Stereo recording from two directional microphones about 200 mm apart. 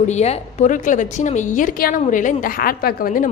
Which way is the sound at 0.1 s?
35° left (ahead or behind).